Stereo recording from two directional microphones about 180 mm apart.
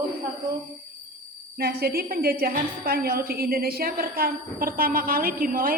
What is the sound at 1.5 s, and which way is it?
A woman's voice, 60° right (ahead or behind).